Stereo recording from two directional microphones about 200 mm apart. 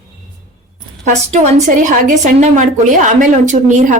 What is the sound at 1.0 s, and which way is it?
A woman's voice, 35° right (ahead or behind).